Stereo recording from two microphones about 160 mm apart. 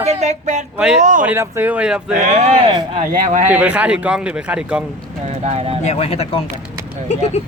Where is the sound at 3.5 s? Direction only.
10° right (ahead or behind).